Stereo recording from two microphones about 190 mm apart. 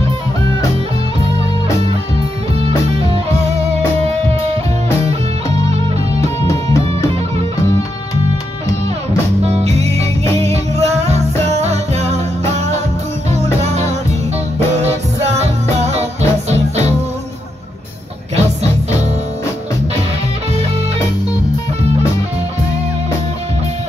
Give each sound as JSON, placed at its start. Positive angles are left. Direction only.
{"t": 2.6, "sound": "music", "side_deg": -30}
{"t": 6.4, "sound": "music", "side_deg": 15}
{"t": 9.4, "sound": "music", "side_deg": -35}
{"t": 18.3, "sound": "music", "side_deg": -35}